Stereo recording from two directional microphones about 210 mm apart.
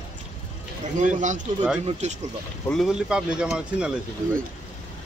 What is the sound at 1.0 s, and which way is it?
Speech, 35° right (ahead or behind).